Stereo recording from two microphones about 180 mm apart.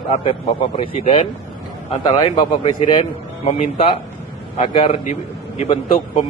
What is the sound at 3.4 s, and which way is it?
A man's voice, 30° left (ahead or behind).